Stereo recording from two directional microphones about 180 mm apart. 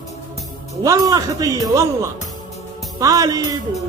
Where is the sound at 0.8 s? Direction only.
20° right (ahead or behind).